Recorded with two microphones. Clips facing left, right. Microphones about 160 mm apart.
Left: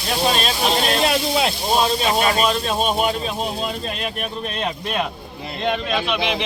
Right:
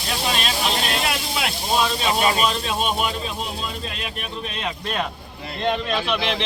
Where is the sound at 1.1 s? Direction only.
30° left (ahead or behind).